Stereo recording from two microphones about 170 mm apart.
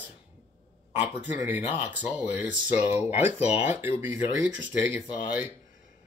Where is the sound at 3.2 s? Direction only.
40° left (ahead or behind).